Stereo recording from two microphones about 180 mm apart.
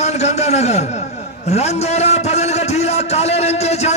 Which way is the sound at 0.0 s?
40° left (ahead or behind).